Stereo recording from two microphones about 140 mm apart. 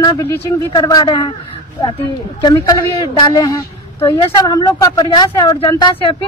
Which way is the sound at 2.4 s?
30° left (ahead or behind).